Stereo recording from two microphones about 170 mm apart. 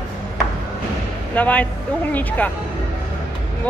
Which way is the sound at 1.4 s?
10° left (ahead or behind).